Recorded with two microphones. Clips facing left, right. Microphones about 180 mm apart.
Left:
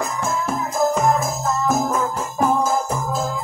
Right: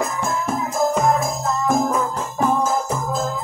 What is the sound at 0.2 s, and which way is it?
Music, centre (ahead or behind).